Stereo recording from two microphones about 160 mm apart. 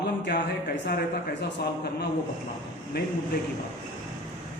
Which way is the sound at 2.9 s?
75° left (ahead or behind).